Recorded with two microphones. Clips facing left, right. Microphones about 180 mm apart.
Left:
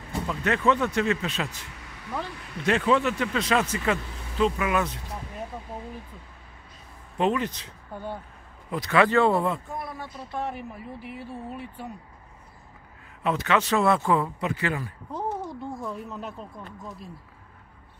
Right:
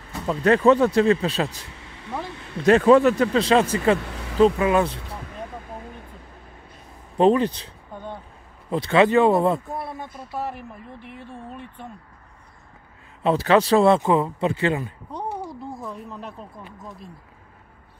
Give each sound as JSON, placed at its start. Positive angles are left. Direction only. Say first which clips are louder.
{"t": 0.3, "sound": "a man's voice", "louder": "right 8 dB", "side_deg": -35}
{"t": 4.0, "sound": "vehicle", "louder": "right 6 dB", "side_deg": -85}
{"t": 4.6, "sound": "a man's voice", "louder": "right 6 dB", "side_deg": -30}
{"t": 7.2, "sound": "a man's voice", "louder": "right 8 dB", "side_deg": -35}
{"t": 7.9, "sound": "speech", "louder": "left 1 dB", "side_deg": 10}
{"t": 8.6, "sound": "speech", "louder": "right 4 dB", "side_deg": -25}
{"t": 9.4, "sound": "a man's voice", "louder": "right 6 dB", "side_deg": -35}
{"t": 10.1, "sound": "speech", "louder": "even", "side_deg": -5}
{"t": 13.2, "sound": "speech", "louder": "right 7 dB", "side_deg": -30}
{"t": 15.4, "sound": "speech", "louder": "even", "side_deg": 0}